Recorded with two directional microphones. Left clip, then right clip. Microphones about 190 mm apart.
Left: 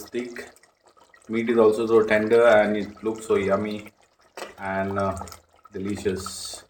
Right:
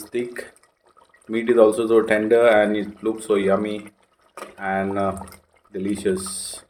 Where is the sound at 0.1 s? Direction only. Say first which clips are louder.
Right 5 dB; 45° right (ahead or behind).